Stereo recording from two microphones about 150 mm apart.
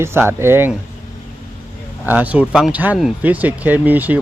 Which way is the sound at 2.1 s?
10° right (ahead or behind).